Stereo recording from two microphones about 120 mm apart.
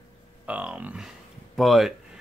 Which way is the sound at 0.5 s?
10° right (ahead or behind).